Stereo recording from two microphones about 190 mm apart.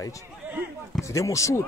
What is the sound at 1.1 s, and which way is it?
Speech, 15° left (ahead or behind).